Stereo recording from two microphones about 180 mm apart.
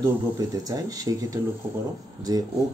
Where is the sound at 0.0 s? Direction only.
20° right (ahead or behind).